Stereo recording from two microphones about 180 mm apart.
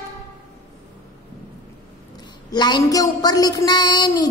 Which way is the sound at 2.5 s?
25° left (ahead or behind).